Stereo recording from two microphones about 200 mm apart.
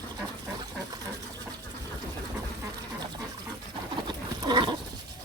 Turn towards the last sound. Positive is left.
turn(degrees=-20)  # may be behind; listen again after turning